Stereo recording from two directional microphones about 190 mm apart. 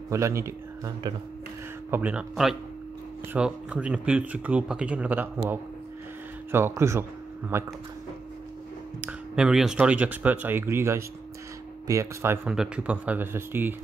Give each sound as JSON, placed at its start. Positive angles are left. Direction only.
{"t": 0.1, "sound": "speech", "side_deg": -15}
{"t": 6.5, "sound": "speech", "side_deg": -15}
{"t": 9.0, "sound": "speech", "side_deg": -5}